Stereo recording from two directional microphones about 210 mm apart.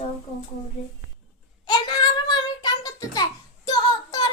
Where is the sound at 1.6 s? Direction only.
20° left (ahead or behind).